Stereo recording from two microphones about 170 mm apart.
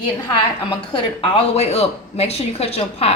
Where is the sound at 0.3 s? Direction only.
30° left (ahead or behind).